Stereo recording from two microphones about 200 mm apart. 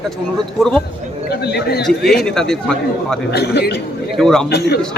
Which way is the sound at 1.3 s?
55° left (ahead or behind).